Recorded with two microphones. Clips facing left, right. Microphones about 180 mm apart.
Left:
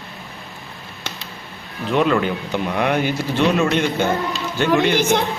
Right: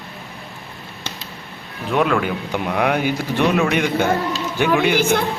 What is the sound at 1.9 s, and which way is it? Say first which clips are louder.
Speech: left 1 dB; 5° right (ahead or behind).